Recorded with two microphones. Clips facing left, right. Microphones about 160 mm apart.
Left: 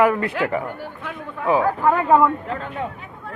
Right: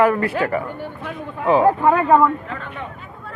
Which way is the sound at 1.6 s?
15° right (ahead or behind).